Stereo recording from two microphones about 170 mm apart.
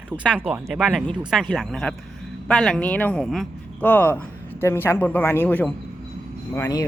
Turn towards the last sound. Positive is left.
turn(degrees=15)  # may be behind; listen again after turning